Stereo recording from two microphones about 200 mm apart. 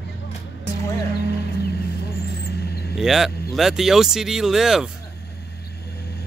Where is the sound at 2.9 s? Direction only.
Centre (ahead or behind).